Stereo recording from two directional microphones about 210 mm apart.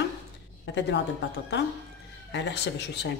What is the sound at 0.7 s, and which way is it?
Speech, 55° left (ahead or behind).